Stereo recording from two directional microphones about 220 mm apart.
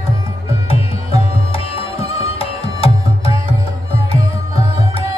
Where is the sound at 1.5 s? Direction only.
25° left (ahead or behind).